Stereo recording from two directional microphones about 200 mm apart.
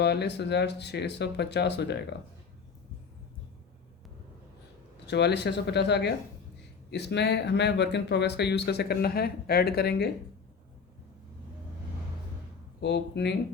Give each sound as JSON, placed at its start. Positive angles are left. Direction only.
{"t": 0.0, "sound": "speech", "side_deg": 55}
{"t": 5.0, "sound": "speech", "side_deg": 60}
{"t": 12.8, "sound": "speech", "side_deg": 55}